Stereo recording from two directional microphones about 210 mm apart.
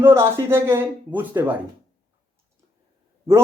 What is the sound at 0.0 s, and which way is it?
Speech, 10° right (ahead or behind).